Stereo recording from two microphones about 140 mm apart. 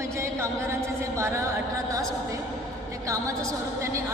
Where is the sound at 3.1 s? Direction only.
20° right (ahead or behind).